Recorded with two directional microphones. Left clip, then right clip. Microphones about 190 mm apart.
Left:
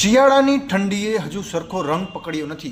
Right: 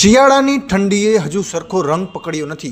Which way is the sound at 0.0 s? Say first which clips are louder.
Right 4 dB; 35° right (ahead or behind).